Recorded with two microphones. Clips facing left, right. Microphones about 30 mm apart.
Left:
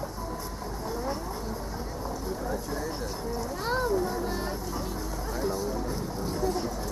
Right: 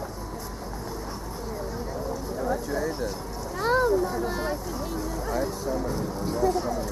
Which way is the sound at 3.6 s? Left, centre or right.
Centre.